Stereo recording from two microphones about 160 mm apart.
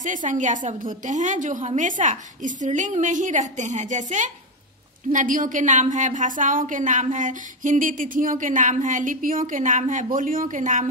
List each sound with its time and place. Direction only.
0.0 s a woman's voice: 55° right (ahead or behind)